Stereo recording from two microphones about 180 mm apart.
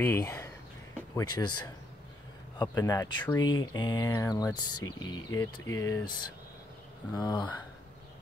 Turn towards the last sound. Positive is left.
turn(degrees=25)  # may be behind; listen again after turning